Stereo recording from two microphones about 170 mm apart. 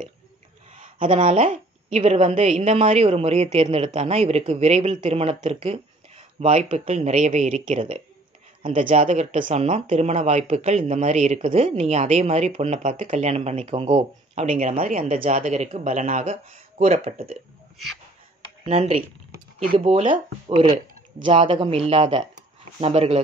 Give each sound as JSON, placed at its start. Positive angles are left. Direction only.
{"t": 0.9, "sound": "speech", "side_deg": -30}
{"t": 18.7, "sound": "speech", "side_deg": -40}